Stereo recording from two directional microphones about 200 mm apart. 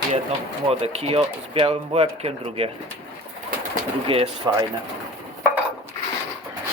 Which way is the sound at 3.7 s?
30° right (ahead or behind).